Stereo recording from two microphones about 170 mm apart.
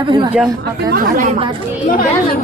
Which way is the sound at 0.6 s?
60° right (ahead or behind).